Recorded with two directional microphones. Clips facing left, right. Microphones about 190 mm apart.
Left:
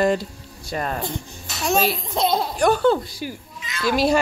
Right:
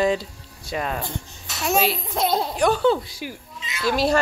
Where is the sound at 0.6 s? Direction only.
Centre (ahead or behind).